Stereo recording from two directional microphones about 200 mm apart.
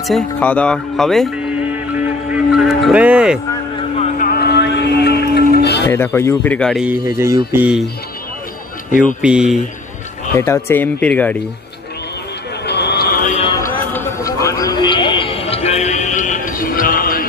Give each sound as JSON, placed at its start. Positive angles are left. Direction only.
{"t": 0.0, "sound": "speech", "side_deg": 5}
{"t": 4.0, "sound": "a sound", "side_deg": 45}
{"t": 5.6, "sound": "music", "side_deg": 55}
{"t": 5.9, "sound": "speech", "side_deg": 10}
{"t": 7.1, "sound": "speech", "side_deg": -15}
{"t": 9.2, "sound": "speech", "side_deg": -5}
{"t": 10.3, "sound": "speech", "side_deg": 15}
{"t": 12.6, "sound": "a sound", "side_deg": 55}
{"t": 13.3, "sound": "a sound", "side_deg": 25}
{"t": 13.9, "sound": "music", "side_deg": 15}